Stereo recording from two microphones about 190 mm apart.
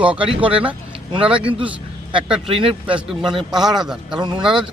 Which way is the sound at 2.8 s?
5° right (ahead or behind).